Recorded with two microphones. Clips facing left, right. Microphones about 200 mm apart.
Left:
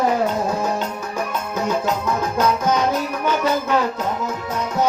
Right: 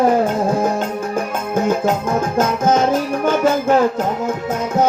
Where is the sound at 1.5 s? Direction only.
50° right (ahead or behind).